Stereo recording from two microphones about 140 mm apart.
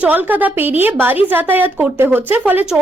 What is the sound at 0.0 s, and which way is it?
Speech, 10° right (ahead or behind).